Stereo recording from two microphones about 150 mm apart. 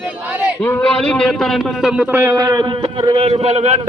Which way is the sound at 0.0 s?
10° right (ahead or behind).